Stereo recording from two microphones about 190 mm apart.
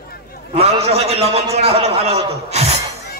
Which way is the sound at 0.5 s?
35° right (ahead or behind).